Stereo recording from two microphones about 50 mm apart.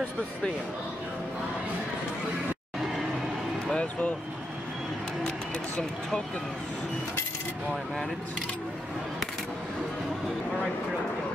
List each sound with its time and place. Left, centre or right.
3.7 s speech: left